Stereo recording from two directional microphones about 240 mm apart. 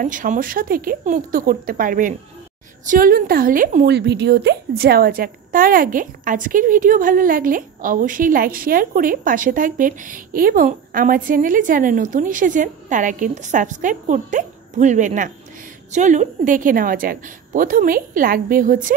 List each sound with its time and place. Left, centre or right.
0.0 s a woman's voice: right